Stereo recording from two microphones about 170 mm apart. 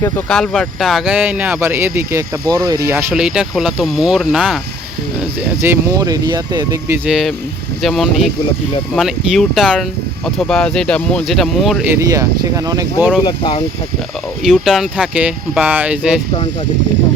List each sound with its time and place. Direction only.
0.3 s speech: 5° left (ahead or behind)
5.6 s speech: 15° right (ahead or behind)
7.1 s speech: centre (ahead or behind)
11.9 s speech: 20° right (ahead or behind)
13.2 s speech: 30° left (ahead or behind)
14.4 s speech: centre (ahead or behind)